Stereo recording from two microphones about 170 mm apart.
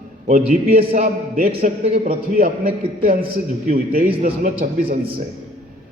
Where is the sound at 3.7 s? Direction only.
60° right (ahead or behind).